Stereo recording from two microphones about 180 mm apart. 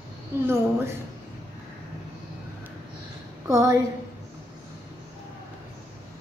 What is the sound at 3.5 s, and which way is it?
Speech, 20° right (ahead or behind).